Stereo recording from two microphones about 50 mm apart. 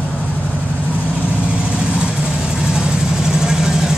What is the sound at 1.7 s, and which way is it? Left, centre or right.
Vehicle, right.